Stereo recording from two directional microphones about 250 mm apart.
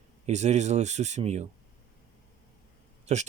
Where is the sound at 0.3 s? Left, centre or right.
Right.